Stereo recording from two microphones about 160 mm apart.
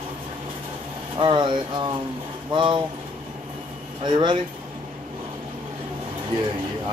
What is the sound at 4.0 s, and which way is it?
Speech, 30° right (ahead or behind).